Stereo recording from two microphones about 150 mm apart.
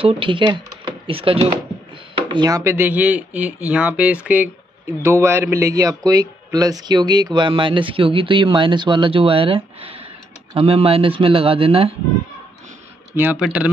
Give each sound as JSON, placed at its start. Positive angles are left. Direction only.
{"t": 0.0, "sound": "speech", "side_deg": -35}
{"t": 2.2, "sound": "a man's voice", "side_deg": -30}
{"t": 13.1, "sound": "speech", "side_deg": -15}